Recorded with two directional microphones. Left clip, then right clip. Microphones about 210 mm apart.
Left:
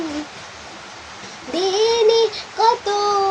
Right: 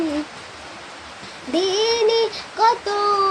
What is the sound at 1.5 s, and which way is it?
Child singing, 15° right (ahead or behind).